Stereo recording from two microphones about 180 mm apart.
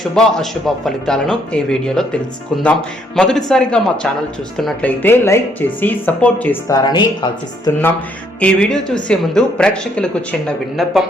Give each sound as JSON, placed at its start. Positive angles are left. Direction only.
{"t": 0.0, "sound": "a woman's voice", "side_deg": 5}
{"t": 3.2, "sound": "a woman's voice", "side_deg": 5}
{"t": 6.7, "sound": "speech", "side_deg": 20}
{"t": 8.4, "sound": "a woman's voice", "side_deg": 5}